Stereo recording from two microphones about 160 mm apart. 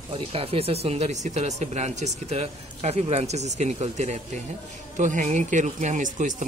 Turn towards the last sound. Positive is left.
turn(degrees=-55)  # may be behind; listen again after turning